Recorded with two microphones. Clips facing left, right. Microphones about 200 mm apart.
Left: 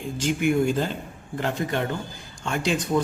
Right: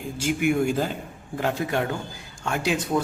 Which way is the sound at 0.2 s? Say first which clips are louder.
Even; 10° right (ahead or behind).